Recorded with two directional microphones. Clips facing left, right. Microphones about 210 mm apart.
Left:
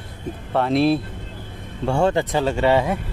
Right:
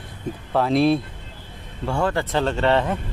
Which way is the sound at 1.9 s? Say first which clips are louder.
Left 4 dB; 25° left (ahead or behind).